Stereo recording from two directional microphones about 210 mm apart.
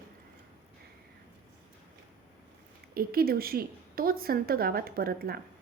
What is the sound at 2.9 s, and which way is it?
A woman's voice, 45° right (ahead or behind).